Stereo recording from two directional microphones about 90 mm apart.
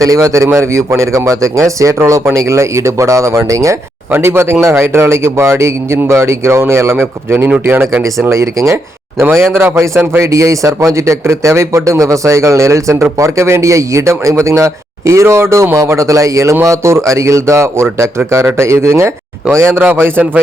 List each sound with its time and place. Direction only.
0.0 s a man's voice: 40° right (ahead or behind); by 8.3 s 20° right (ahead or behind)
8.3 s a man's voice: 35° right (ahead or behind)